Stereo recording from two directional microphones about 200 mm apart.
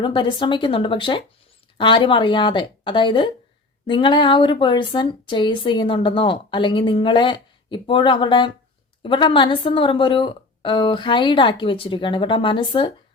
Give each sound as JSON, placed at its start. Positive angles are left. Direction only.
{"t": 0.0, "sound": "speech", "side_deg": 25}